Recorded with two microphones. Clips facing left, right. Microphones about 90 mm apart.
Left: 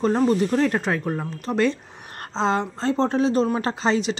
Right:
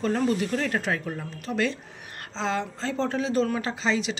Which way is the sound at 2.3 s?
30° left (ahead or behind).